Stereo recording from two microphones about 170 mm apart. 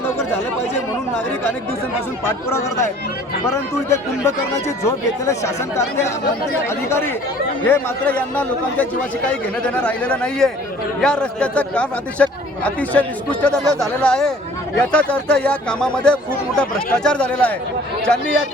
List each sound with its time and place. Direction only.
4.9 s a man's voice: 20° left (ahead or behind)
7.6 s a man's voice: 10° left (ahead or behind)